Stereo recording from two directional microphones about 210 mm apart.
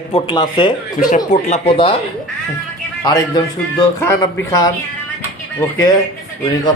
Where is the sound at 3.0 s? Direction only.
20° left (ahead or behind).